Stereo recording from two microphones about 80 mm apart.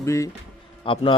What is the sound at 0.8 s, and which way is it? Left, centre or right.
Speech, left.